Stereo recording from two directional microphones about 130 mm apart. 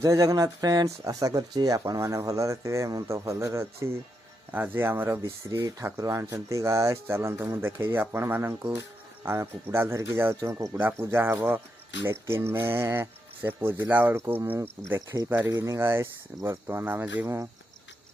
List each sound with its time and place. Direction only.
0.0 s speech: 25° right (ahead or behind)